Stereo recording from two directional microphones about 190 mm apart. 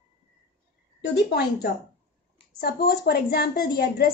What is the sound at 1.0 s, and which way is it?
A woman's voice, 60° left (ahead or behind).